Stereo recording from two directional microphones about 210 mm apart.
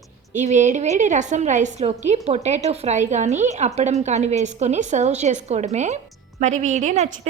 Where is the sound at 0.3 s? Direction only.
35° right (ahead or behind).